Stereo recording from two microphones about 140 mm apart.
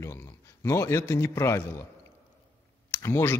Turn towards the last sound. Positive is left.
turn(degrees=20)  # may be behind; listen again after turning